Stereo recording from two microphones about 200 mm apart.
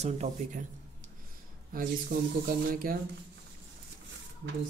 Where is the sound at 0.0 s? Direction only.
35° right (ahead or behind).